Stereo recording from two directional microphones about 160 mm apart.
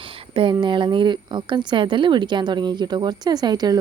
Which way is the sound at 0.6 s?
30° right (ahead or behind).